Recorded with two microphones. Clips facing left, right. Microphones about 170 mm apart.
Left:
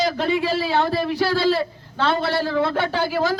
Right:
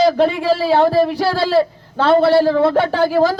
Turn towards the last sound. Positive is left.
turn(degrees=-40)  # may be behind; listen again after turning